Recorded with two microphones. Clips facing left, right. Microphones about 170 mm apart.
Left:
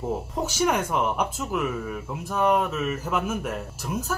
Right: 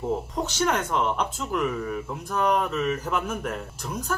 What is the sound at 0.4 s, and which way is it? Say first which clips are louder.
Speech: left 3 dB; 10° left (ahead or behind).